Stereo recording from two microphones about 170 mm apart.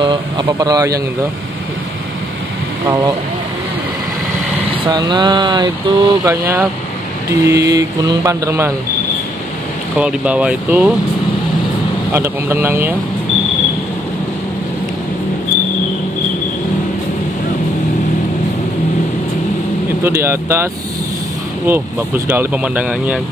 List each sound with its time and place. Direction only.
0.0 s speech: 25° right (ahead or behind)
4.8 s speech: 25° right (ahead or behind)
9.9 s speech: 5° right (ahead or behind)
12.1 s speech: 15° right (ahead or behind)
20.0 s speech: 15° right (ahead or behind)
21.6 s speech: 10° right (ahead or behind)